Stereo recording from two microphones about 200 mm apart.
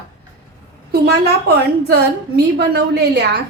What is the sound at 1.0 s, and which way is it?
A woman's voice, 55° right (ahead or behind).